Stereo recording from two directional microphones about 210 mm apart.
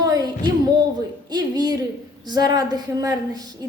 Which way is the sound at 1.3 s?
20° right (ahead or behind).